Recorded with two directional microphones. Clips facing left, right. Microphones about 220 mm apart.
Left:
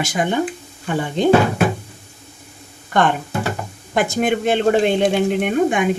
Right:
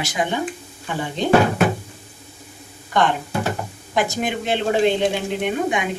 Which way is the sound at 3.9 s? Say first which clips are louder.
Left 4 dB; 50° left (ahead or behind).